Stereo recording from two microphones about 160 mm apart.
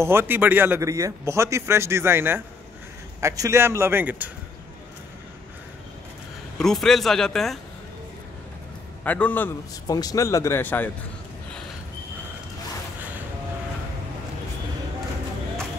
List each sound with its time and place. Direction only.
0.0 s speech: 15° right (ahead or behind)
6.6 s speech: centre (ahead or behind)
9.0 s a man's voice: 10° left (ahead or behind)
9.8 s speech: 25° left (ahead or behind)